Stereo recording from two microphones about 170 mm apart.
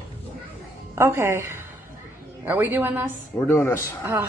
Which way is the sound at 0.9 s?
15° right (ahead or behind).